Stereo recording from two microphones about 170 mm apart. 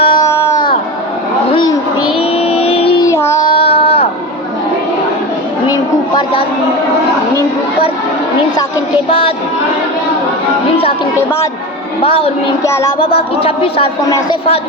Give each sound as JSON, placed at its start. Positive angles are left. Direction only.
{"t": 0.0, "sound": "music", "side_deg": 30}
{"t": 0.3, "sound": "music", "side_deg": 15}
{"t": 1.5, "sound": "a sound", "side_deg": 25}
{"t": 2.4, "sound": "music", "side_deg": 35}
{"t": 3.1, "sound": "child singing", "side_deg": 15}
{"t": 3.4, "sound": "child singing", "side_deg": 35}
{"t": 5.6, "sound": "a sound", "side_deg": 25}
{"t": 9.0, "sound": "speech", "side_deg": 35}
{"t": 12.0, "sound": "speech", "side_deg": 35}
{"t": 12.6, "sound": "music", "side_deg": 15}
{"t": 13.0, "sound": "speech", "side_deg": 35}